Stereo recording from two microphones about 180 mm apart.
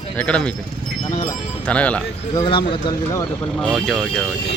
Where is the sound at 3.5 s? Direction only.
Centre (ahead or behind).